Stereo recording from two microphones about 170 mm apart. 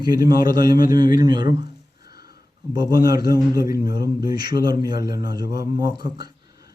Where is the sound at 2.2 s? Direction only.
65° left (ahead or behind).